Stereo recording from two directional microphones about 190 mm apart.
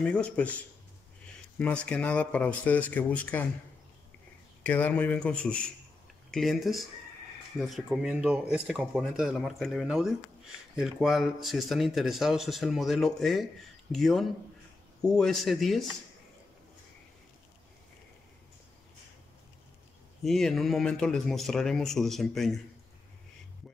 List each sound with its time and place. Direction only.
0.0 s speech: 5° left (ahead or behind)
1.6 s speech: 5° left (ahead or behind)
4.6 s speech: 10° left (ahead or behind)
20.2 s speech: centre (ahead or behind)